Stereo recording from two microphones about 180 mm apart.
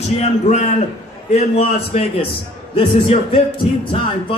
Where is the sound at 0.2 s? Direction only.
40° left (ahead or behind).